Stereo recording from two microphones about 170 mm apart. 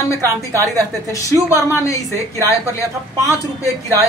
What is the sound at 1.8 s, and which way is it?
Speech, 20° left (ahead or behind).